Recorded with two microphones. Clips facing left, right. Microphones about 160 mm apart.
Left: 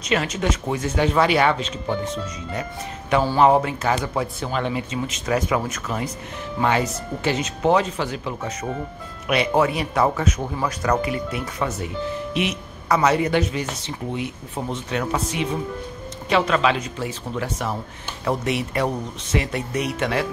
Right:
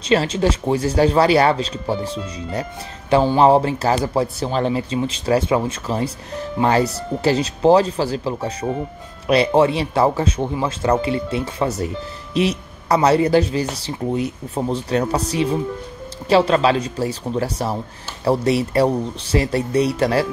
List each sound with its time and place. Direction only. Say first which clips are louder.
0.1 s speech: right 5 dB; 30° right (ahead or behind)